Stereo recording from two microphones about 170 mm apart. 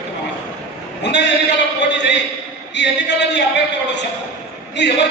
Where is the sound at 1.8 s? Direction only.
90° left.